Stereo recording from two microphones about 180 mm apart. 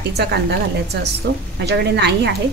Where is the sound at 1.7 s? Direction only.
70° right (ahead or behind).